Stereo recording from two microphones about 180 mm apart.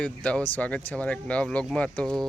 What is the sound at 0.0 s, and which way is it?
Speech, 5° left (ahead or behind).